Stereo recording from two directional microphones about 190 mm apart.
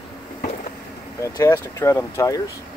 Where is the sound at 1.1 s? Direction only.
15° left (ahead or behind).